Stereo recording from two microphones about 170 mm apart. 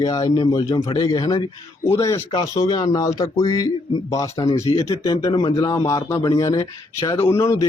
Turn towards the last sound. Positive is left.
turn(degrees=20)  # may be behind; listen again after turning